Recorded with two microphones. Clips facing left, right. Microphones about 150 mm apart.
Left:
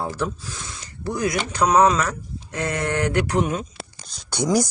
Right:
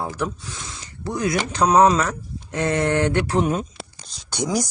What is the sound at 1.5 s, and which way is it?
Speech, 25° right (ahead or behind).